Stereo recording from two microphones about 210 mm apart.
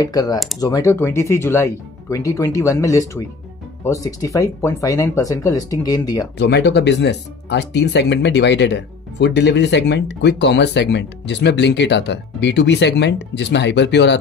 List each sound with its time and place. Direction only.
0.0 s speech: 15° left (ahead or behind)
6.3 s speech: 55° left (ahead or behind)